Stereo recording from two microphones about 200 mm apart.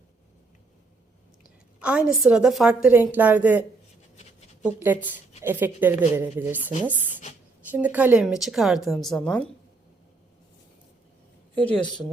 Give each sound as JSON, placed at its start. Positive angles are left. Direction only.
{"t": 1.8, "sound": "a woman's voice", "side_deg": -5}
{"t": 4.6, "sound": "a woman's voice", "side_deg": -10}